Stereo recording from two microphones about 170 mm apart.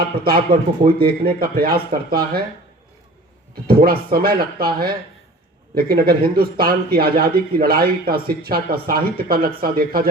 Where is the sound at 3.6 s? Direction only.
60° right (ahead or behind).